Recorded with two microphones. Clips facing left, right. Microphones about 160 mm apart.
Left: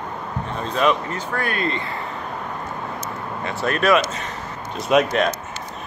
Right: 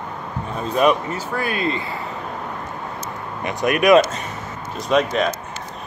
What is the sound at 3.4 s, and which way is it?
Speech, 15° right (ahead or behind).